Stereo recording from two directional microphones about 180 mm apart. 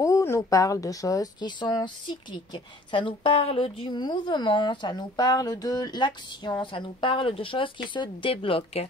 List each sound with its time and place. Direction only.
0.0 s a woman's voice: 15° left (ahead or behind)